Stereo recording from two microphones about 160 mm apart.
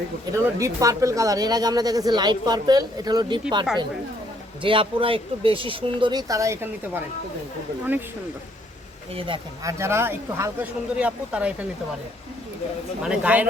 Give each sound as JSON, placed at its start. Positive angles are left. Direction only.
{"t": 0.3, "sound": "speech", "side_deg": -20}
{"t": 4.6, "sound": "speech", "side_deg": -35}
{"t": 9.1, "sound": "speech", "side_deg": -30}
{"t": 9.6, "sound": "speech", "side_deg": -15}
{"t": 13.0, "sound": "speech", "side_deg": -5}